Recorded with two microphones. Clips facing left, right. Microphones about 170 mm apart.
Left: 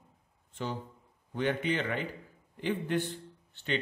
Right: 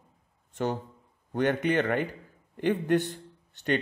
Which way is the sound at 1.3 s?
50° right (ahead or behind).